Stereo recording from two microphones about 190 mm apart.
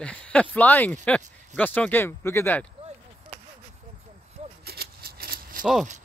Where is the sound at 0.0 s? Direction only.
5° left (ahead or behind).